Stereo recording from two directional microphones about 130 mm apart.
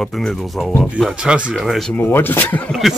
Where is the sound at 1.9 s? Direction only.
15° left (ahead or behind).